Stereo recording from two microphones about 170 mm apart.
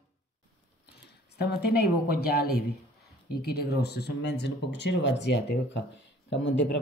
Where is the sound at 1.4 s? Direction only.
70° left (ahead or behind).